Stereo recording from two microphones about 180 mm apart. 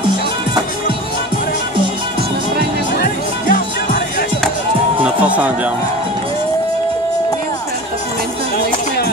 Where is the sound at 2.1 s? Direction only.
60° right (ahead or behind).